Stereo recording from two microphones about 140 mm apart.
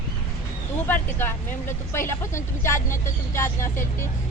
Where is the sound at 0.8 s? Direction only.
15° left (ahead or behind).